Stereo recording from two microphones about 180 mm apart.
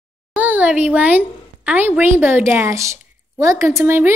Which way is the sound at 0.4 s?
10° right (ahead or behind).